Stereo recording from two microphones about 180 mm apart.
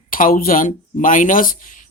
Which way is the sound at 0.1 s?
50° left (ahead or behind).